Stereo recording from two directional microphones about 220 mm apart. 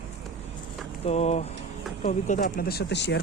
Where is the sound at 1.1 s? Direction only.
30° left (ahead or behind); by 3.2 s 50° left (ahead or behind).